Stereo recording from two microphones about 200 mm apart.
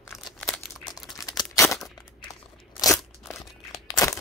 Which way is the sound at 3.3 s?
15° left (ahead or behind).